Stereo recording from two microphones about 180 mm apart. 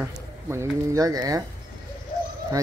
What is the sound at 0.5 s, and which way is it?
Speech, 15° right (ahead or behind).